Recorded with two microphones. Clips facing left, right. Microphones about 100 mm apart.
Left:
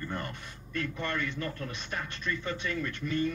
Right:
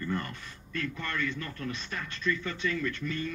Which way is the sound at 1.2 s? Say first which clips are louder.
Right 1 dB; 40° left (ahead or behind).